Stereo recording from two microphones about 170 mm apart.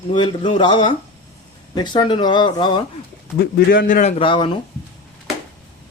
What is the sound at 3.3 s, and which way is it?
Speech, 75° left (ahead or behind).